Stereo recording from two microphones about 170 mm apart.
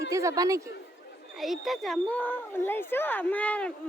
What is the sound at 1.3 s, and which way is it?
A woman's voice, centre (ahead or behind).